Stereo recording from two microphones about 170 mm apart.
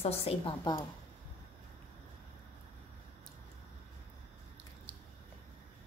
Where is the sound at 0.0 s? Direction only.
35° left (ahead or behind).